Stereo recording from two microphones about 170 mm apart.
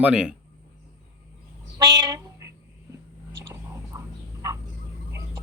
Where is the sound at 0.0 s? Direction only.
5° right (ahead or behind).